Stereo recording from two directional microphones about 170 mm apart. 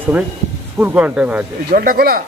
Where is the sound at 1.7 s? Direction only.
60° right (ahead or behind).